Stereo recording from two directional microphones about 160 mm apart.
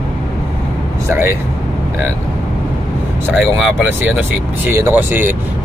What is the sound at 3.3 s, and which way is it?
Speech, 5° right (ahead or behind).